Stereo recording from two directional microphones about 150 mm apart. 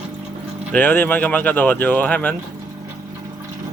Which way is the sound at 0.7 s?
10° left (ahead or behind).